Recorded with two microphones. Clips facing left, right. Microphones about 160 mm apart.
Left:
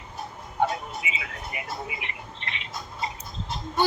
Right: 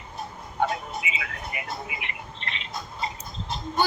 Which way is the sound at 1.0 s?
30° left (ahead or behind).